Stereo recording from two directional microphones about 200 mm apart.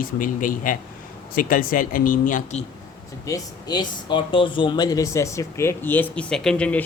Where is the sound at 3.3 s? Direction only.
20° left (ahead or behind).